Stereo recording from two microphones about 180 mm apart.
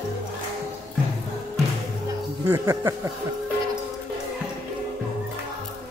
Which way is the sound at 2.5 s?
15° right (ahead or behind).